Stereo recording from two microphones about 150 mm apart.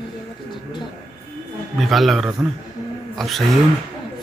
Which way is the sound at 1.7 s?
Centre (ahead or behind).